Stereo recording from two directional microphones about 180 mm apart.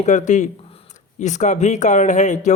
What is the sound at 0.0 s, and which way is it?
Speech, 45° left (ahead or behind).